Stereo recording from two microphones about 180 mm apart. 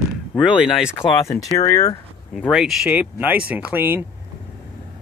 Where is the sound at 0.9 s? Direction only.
15° left (ahead or behind).